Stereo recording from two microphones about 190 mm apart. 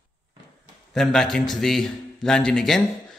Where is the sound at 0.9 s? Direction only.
Centre (ahead or behind).